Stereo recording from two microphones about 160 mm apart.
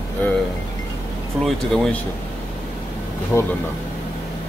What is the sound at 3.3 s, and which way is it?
Speech, 15° left (ahead or behind).